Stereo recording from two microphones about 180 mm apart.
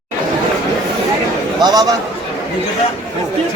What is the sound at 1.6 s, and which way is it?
Speech, 25° right (ahead or behind).